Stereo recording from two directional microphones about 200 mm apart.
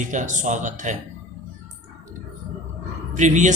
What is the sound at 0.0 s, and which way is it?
Speech, 40° right (ahead or behind).